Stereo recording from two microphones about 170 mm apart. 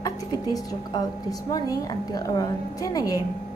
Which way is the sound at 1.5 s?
20° left (ahead or behind).